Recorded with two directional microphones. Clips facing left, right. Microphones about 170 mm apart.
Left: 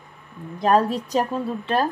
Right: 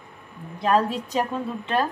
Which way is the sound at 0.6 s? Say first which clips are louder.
Left 3 dB; 40° left (ahead or behind).